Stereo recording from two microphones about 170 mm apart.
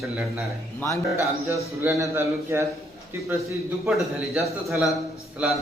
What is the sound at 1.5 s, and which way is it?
A man's voice, 20° right (ahead or behind).